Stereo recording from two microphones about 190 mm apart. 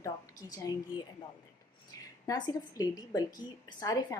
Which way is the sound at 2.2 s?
20° left (ahead or behind).